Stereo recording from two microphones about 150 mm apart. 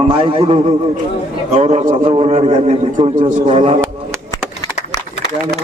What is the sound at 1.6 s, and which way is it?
A man's voice, 55° right (ahead or behind).